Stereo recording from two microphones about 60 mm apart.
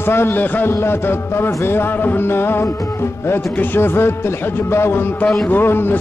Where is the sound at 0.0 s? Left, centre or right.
Left.